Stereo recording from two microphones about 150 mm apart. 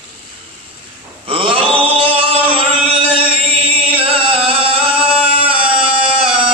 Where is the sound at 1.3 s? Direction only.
35° right (ahead or behind).